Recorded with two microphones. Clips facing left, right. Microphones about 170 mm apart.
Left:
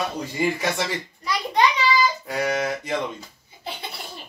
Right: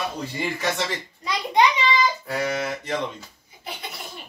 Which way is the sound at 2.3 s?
15° left (ahead or behind).